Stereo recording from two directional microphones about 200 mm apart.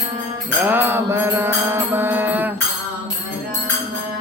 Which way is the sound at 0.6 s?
10° right (ahead or behind).